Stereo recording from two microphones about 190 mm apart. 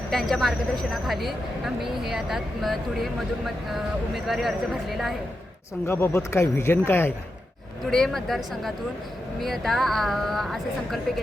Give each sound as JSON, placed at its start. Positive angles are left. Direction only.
{"t": 0.1, "sound": "speech", "side_deg": 0}
{"t": 5.8, "sound": "speech", "side_deg": 10}